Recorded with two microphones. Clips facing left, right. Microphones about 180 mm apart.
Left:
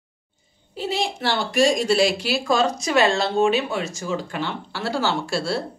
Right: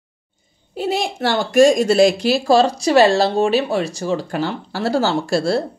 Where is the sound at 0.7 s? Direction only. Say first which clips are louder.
Right 4 dB; 50° right (ahead or behind).